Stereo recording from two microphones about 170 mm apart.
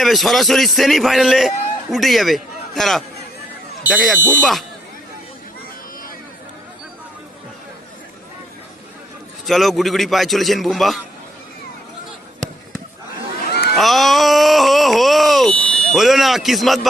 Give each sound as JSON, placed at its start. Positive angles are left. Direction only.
{"t": 0.0, "sound": "a man's voice", "side_deg": 0}
{"t": 9.5, "sound": "a man's voice", "side_deg": 0}
{"t": 13.5, "sound": "a sound", "side_deg": 75}
{"t": 13.7, "sound": "wail", "side_deg": 0}